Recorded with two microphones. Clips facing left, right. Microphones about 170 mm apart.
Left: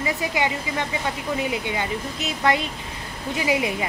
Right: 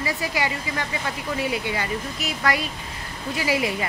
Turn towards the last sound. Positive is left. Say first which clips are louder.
# left 1 dB
turn(degrees=20)  # may be behind; listen again after turning